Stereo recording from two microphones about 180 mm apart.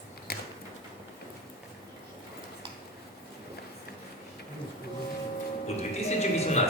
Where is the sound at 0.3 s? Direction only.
60° left (ahead or behind).